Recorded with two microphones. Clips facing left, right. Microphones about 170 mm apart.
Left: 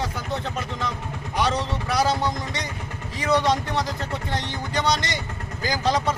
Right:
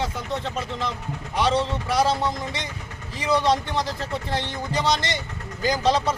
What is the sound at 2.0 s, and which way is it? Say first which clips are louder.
Speech: right 1 dB; centre (ahead or behind).